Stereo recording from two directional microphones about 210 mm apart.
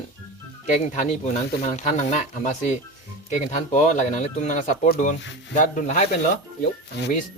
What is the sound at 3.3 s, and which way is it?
Speech, 35° left (ahead or behind).